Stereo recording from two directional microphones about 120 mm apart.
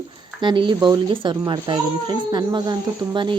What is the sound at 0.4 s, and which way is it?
A child's voice, 40° right (ahead or behind).